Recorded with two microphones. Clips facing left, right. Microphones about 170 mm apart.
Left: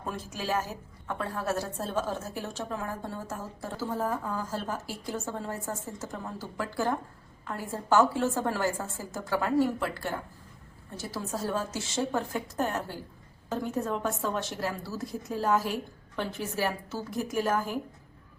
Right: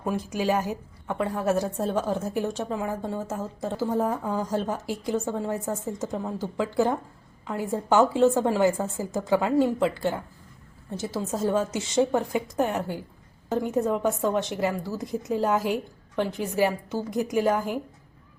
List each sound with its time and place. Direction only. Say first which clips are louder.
0.0 s a woman's voice: right 8 dB; 15° right (ahead or behind)